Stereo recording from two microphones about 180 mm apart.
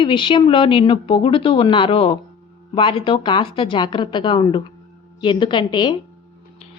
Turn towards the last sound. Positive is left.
turn(degrees=25)  # may be behind; listen again after turning